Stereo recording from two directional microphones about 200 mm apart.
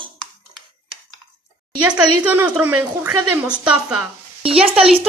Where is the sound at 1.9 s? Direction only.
5° right (ahead or behind).